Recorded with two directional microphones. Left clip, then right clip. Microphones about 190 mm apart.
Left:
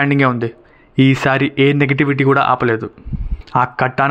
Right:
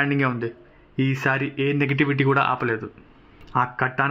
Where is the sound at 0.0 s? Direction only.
30° left (ahead or behind).